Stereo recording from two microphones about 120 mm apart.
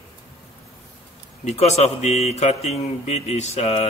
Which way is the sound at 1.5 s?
65° left (ahead or behind).